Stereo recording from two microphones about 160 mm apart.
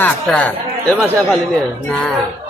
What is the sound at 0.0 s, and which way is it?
Speech, 10° left (ahead or behind).